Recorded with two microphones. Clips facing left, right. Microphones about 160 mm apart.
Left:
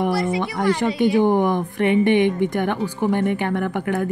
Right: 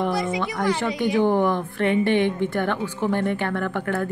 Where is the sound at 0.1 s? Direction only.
20° right (ahead or behind).